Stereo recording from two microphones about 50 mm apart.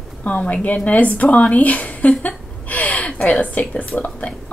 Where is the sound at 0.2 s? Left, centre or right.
Left.